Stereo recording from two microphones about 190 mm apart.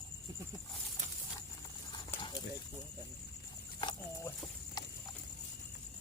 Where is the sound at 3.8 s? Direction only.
20° left (ahead or behind).